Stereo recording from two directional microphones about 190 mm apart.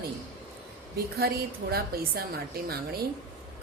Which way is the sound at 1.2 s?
55° right (ahead or behind).